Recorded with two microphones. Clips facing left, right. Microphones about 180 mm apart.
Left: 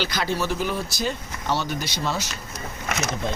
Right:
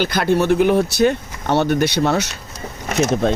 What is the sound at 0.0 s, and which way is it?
Speech, 55° right (ahead or behind).